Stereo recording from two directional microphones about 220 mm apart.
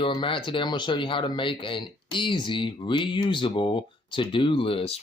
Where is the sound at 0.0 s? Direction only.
25° left (ahead or behind).